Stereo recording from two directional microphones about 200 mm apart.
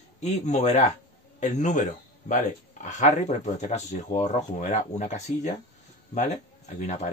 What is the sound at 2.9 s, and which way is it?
Speech, 35° left (ahead or behind).